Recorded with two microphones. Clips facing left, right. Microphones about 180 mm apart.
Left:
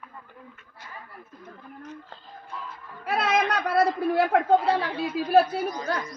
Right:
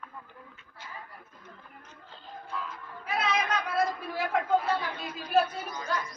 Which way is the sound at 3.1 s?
70° left (ahead or behind).